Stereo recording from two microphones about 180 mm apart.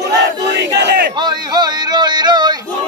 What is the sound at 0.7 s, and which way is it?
Battle cry, 70° right (ahead or behind).